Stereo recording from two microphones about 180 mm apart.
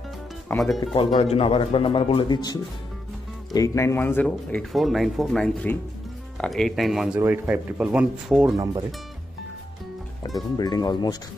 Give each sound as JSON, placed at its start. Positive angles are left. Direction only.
{"t": 0.5, "sound": "speech", "side_deg": 10}
{"t": 0.9, "sound": "speech", "side_deg": 35}
{"t": 10.2, "sound": "speech", "side_deg": 20}